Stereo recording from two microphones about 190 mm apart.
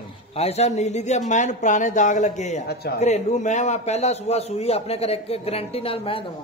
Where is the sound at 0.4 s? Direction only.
35° left (ahead or behind).